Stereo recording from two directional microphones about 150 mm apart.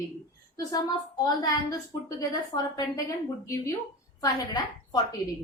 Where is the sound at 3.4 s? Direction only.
20° left (ahead or behind).